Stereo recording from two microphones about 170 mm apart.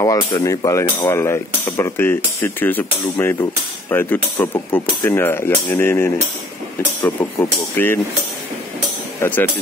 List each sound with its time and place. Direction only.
0.0 s speech: 20° left (ahead or behind)
7.7 s speech: 10° left (ahead or behind)
9.2 s speech: 10° left (ahead or behind)